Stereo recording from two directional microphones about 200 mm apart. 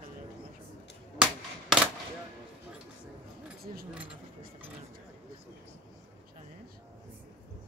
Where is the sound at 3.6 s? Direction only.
45° right (ahead or behind).